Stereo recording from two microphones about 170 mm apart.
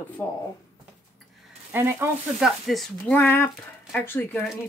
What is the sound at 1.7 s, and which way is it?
Speech, 15° right (ahead or behind).